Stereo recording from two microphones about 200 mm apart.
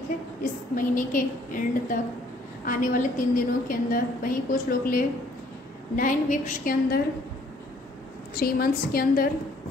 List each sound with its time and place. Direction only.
0.7 s a woman's voice: 40° left (ahead or behind)
8.4 s a woman's voice: 50° left (ahead or behind)